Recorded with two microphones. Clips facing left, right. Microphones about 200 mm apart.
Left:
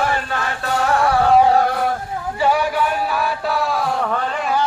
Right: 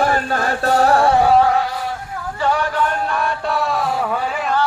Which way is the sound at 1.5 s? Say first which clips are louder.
Left 4 dB; 55° left (ahead or behind).